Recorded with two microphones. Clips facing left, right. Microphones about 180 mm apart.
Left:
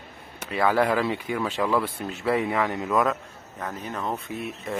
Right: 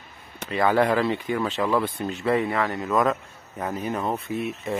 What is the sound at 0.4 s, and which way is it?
Speech, 5° left (ahead or behind).